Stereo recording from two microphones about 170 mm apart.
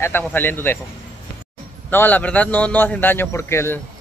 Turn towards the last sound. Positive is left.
turn(degrees=15)  # may be behind; listen again after turning